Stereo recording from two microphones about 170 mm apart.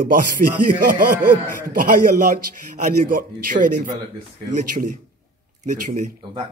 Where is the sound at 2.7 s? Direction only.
45° right (ahead or behind).